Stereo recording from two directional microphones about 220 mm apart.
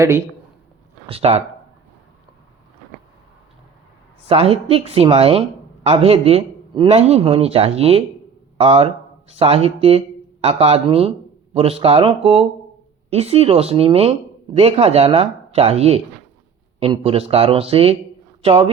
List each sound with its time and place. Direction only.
1.0 s speech: 25° right (ahead or behind)
4.3 s a man's voice: 25° right (ahead or behind)